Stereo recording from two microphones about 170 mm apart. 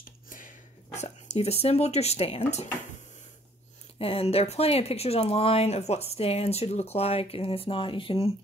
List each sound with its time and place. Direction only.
0.9 s speech: 40° left (ahead or behind)
4.0 s speech: 35° left (ahead or behind)